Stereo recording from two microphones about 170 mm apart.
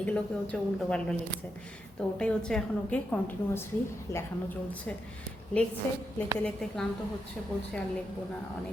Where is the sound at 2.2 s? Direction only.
5° left (ahead or behind).